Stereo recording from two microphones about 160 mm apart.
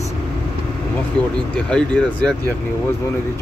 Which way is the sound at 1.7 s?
5° left (ahead or behind).